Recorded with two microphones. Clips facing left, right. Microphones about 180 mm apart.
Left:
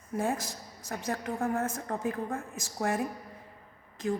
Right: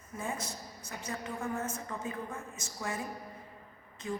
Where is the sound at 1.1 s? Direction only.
65° left (ahead or behind).